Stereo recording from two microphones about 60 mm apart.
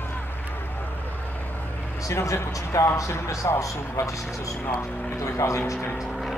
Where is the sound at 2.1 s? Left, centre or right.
Left.